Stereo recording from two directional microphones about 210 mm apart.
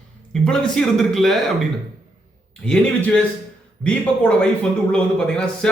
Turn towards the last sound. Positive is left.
turn(degrees=5)  # may be behind; listen again after turning